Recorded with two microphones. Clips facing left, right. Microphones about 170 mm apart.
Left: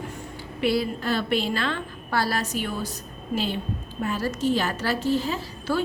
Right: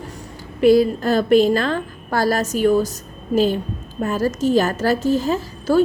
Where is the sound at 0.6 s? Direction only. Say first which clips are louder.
Right 11 dB; 45° right (ahead or behind).